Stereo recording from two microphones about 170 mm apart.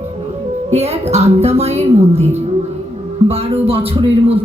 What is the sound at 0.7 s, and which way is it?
Speech, 40° right (ahead or behind).